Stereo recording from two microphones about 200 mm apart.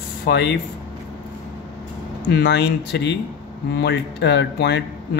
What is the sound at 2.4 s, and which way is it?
Speech, 60° left (ahead or behind).